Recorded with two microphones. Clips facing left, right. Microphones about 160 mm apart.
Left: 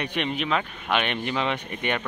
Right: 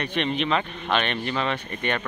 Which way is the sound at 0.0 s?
10° left (ahead or behind).